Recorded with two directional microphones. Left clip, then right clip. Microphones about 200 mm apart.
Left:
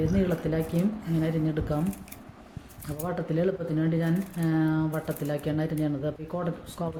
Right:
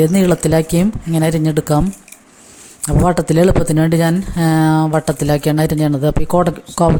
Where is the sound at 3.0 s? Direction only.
55° right (ahead or behind).